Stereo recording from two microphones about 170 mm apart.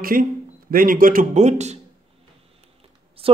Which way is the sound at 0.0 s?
55° right (ahead or behind).